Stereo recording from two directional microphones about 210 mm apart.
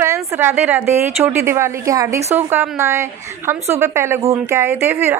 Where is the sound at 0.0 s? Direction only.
10° right (ahead or behind).